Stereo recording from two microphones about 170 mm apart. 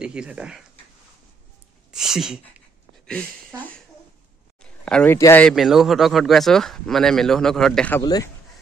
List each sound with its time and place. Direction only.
0.0 s speech: 5° right (ahead or behind)
1.9 s a sound: 5° right (ahead or behind)
4.6 s a sound: 5° left (ahead or behind)
5.1 s speech: 15° left (ahead or behind)
5.5 s speech: centre (ahead or behind)
8.0 s speech: 25° left (ahead or behind)